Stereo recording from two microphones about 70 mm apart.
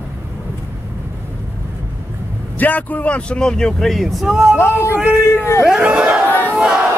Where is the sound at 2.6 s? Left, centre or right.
Left; by 4.5 s centre.